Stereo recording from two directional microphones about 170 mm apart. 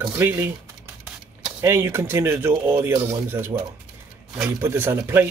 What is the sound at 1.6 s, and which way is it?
Speech, 15° right (ahead or behind).